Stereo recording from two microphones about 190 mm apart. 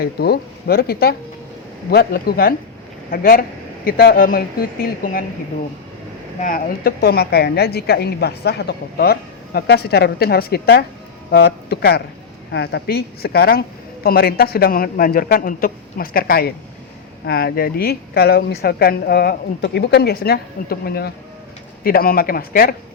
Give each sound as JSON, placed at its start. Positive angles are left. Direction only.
{"t": 0.0, "sound": "a woman's voice", "side_deg": 55}
{"t": 6.4, "sound": "a woman's voice", "side_deg": 50}